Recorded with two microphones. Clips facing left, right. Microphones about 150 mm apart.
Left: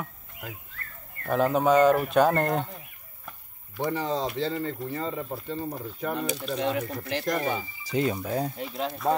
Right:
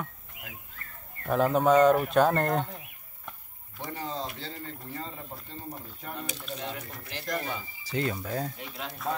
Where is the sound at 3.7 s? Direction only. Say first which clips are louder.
Left 8 dB; 80° left.